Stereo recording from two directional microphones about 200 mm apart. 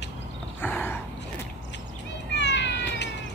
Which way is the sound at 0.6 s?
10° left (ahead or behind).